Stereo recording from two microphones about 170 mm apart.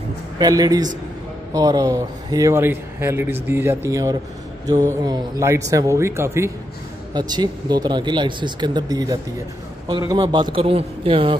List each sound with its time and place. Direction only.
0.4 s speech: 20° right (ahead or behind)